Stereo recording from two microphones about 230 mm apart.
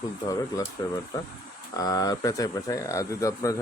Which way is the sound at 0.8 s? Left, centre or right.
Centre.